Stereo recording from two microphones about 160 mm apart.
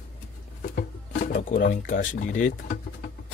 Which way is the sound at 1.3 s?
60° left (ahead or behind).